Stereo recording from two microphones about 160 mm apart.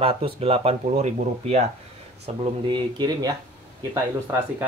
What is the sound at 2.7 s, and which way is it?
Speech, 25° right (ahead or behind).